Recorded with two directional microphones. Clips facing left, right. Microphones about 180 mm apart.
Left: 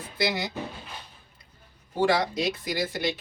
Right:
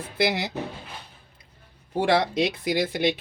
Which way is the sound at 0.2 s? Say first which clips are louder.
Right 3 dB; 65° right (ahead or behind).